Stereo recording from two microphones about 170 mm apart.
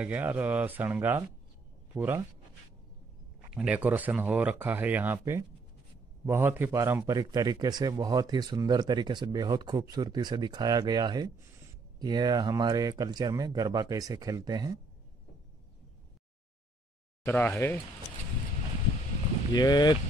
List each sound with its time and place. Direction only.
0.0 s speech: 10° right (ahead or behind)
3.4 s a man's voice: 5° right (ahead or behind); by 14.8 s 25° right (ahead or behind)
17.2 s speech: 10° left (ahead or behind)
19.5 s speech: 25° left (ahead or behind)